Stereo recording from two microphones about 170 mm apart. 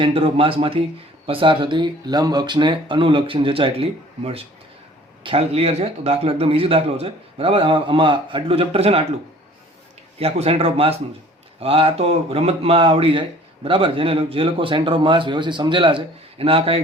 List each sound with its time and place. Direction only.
0.0 s a man's voice: 30° right (ahead or behind)
10.2 s a man's voice: 35° right (ahead or behind)